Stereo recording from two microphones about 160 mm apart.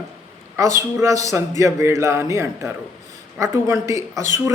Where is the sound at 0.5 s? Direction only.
15° right (ahead or behind).